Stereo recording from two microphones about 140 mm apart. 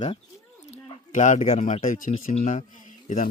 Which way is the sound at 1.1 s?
60° left (ahead or behind).